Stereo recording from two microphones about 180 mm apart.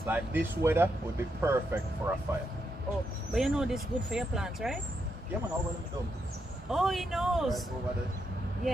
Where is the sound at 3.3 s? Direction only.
5° right (ahead or behind).